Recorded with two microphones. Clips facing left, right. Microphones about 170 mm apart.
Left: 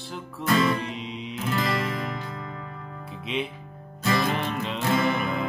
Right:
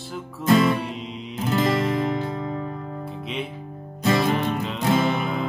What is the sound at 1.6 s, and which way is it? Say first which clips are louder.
Music: right 7 dB; 30° right (ahead or behind).